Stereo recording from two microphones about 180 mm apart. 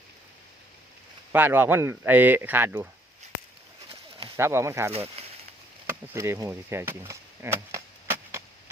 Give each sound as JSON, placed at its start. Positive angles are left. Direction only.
{"t": 1.3, "sound": "speech", "side_deg": -10}
{"t": 4.4, "sound": "speech", "side_deg": -15}
{"t": 4.9, "sound": "speech", "side_deg": -35}
{"t": 5.9, "sound": "a sound", "side_deg": -15}